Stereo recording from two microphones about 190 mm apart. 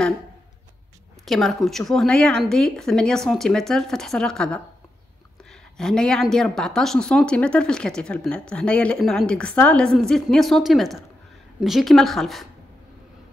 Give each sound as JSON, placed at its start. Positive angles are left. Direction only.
{"t": 1.2, "sound": "speech", "side_deg": 0}
{"t": 5.5, "sound": "a sound", "side_deg": 0}
{"t": 6.3, "sound": "speech", "side_deg": 0}